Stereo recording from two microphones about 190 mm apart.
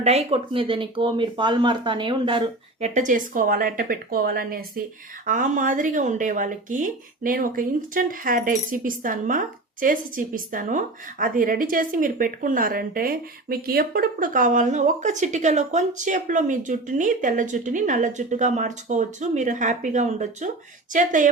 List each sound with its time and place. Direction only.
0.0 s speech: 35° right (ahead or behind)
2.9 s a woman's voice: 40° right (ahead or behind)